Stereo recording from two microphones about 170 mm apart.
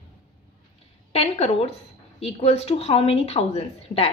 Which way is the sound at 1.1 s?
35° left (ahead or behind).